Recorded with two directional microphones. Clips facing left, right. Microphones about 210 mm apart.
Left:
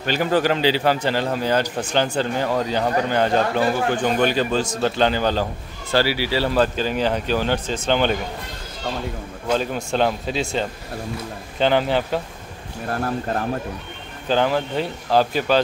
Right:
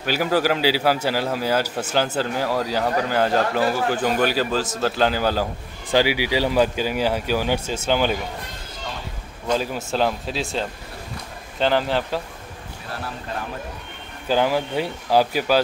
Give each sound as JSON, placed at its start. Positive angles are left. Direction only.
{"t": 0.0, "sound": "a man's voice", "side_deg": -5}
{"t": 9.6, "sound": "a man's voice", "side_deg": -5}
{"t": 12.8, "sound": "speech", "side_deg": 50}
{"t": 14.2, "sound": "a man's voice", "side_deg": -10}